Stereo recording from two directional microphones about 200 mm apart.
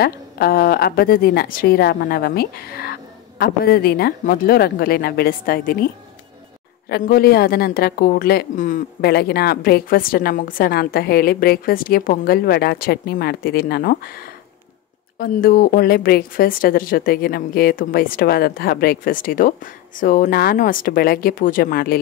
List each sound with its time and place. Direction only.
0.0 s a woman's voice: 50° left (ahead or behind)
6.9 s a woman's voice: 50° left (ahead or behind)